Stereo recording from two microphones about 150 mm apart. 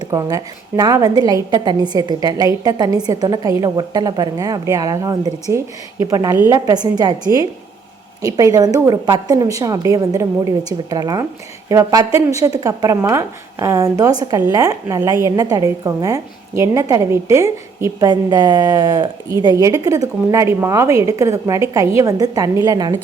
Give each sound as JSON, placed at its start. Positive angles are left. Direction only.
{"t": 0.0, "sound": "a woman's voice", "side_deg": -25}